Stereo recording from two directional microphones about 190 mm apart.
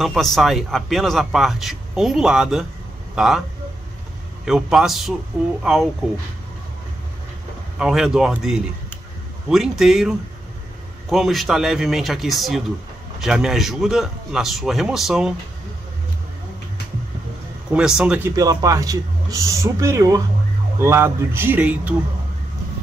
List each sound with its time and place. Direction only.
0.0 s speech: centre (ahead or behind)
4.5 s speech: 5° right (ahead or behind)
7.8 s speech: 5° right (ahead or behind)
17.7 s speech: 5° right (ahead or behind)
18.3 s speech: 20° right (ahead or behind)